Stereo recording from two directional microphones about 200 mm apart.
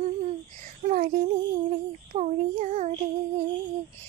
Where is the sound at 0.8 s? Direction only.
40° right (ahead or behind).